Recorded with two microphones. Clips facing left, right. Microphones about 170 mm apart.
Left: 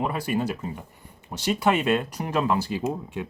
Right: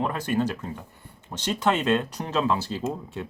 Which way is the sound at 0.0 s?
10° left (ahead or behind).